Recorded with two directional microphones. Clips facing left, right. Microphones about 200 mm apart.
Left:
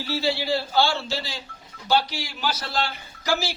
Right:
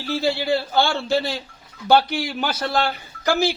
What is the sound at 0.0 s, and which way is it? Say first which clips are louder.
A man's voice: right 3 dB; 50° right (ahead or behind).